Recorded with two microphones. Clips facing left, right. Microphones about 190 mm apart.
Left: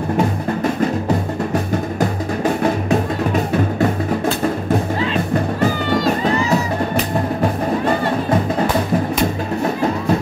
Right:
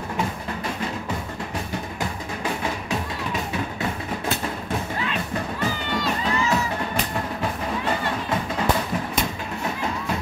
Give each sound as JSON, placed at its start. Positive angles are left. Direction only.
{"t": 1.0, "sound": "music", "side_deg": 45}
{"t": 5.6, "sound": "music", "side_deg": 45}